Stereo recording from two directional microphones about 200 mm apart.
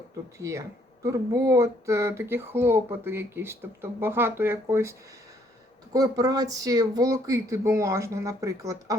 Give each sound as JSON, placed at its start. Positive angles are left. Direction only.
{"t": 0.3, "sound": "speech", "side_deg": -15}